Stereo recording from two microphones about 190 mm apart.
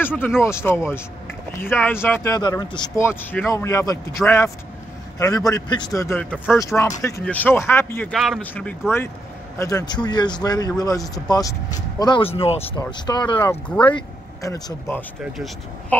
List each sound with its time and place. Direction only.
0.0 s a man's voice: 10° left (ahead or behind)
8.1 s speech: centre (ahead or behind)
9.6 s speech: 20° left (ahead or behind)
13.4 s a man's voice: 10° left (ahead or behind)
13.8 s speech: 20° left (ahead or behind)
15.3 s speech: centre (ahead or behind)